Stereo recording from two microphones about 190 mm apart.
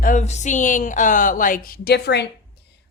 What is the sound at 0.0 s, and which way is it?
A woman's voice, 40° left (ahead or behind).